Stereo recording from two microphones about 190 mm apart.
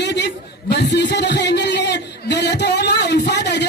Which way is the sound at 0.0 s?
65° left (ahead or behind).